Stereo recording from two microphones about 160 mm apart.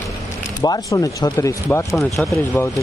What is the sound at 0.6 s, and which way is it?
Speech, 20° left (ahead or behind).